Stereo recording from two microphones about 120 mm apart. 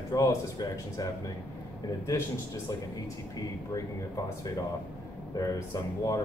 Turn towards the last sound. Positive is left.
turn(degrees=30)  # may be behind; listen again after turning